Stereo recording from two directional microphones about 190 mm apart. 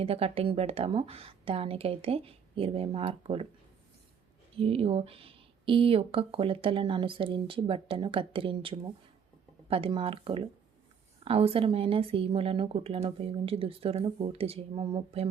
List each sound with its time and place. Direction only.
0.0 s speech: 30° right (ahead or behind)
4.5 s speech: 30° right (ahead or behind)